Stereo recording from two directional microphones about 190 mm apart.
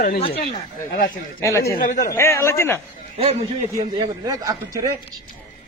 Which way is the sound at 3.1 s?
35° right (ahead or behind).